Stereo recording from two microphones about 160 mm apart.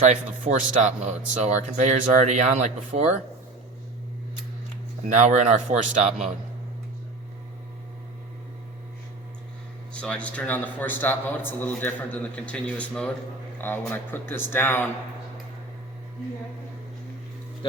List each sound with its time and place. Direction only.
0.0 s speech: 50° right (ahead or behind)
5.0 s speech: 45° right (ahead or behind)
9.9 s a man's voice: 5° left (ahead or behind)